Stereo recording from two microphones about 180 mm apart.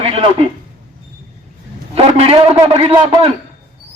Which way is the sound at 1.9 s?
35° right (ahead or behind).